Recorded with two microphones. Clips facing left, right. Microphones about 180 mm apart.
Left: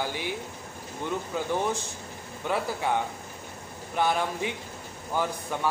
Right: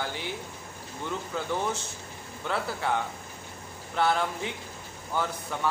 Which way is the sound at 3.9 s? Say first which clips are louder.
Even; 15° left (ahead or behind).